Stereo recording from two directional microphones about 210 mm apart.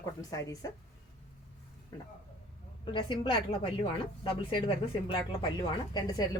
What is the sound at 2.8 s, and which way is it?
Speech, 25° left (ahead or behind).